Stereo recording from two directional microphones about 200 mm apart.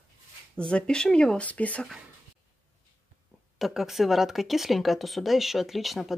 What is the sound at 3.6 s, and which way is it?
Speech, centre (ahead or behind).